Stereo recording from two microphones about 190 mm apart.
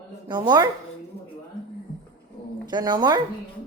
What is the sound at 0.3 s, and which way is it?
Speech, 20° right (ahead or behind).